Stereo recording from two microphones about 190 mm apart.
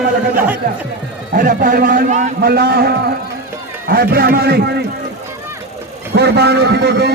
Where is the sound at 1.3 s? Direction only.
50° right (ahead or behind).